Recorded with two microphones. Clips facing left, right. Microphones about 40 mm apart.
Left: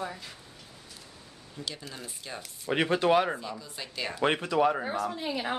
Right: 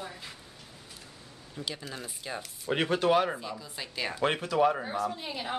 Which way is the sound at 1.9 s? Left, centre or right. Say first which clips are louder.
Right 2 dB; centre.